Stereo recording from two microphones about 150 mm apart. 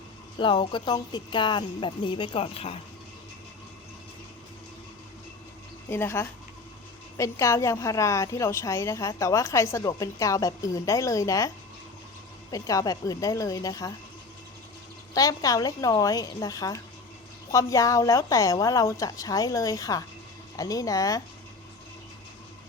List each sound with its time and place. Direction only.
0.3 s speech: 35° left (ahead or behind)
5.9 s a woman's voice: 15° left (ahead or behind)
15.1 s a woman's voice: 25° left (ahead or behind)